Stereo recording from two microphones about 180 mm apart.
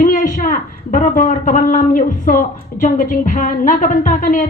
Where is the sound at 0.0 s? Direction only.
50° left (ahead or behind).